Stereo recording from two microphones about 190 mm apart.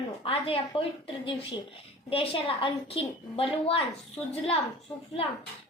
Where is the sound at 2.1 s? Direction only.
30° left (ahead or behind).